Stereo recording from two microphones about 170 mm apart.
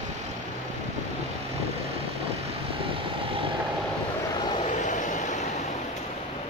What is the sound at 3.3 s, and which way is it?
Vehicle, 30° right (ahead or behind).